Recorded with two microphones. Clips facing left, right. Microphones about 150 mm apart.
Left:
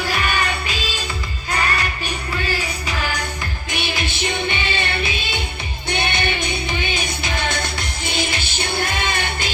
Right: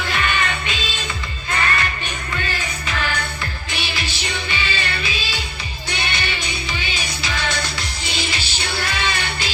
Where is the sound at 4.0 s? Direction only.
50° left (ahead or behind).